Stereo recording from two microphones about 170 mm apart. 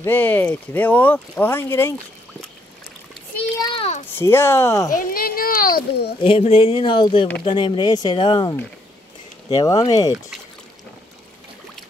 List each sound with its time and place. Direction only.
0.0 s speech: 10° left (ahead or behind)
3.7 s speech: 35° left (ahead or behind)
4.1 s speech: 15° left (ahead or behind)
4.9 s a child's voice: 55° left (ahead or behind)
6.2 s speech: 35° left (ahead or behind)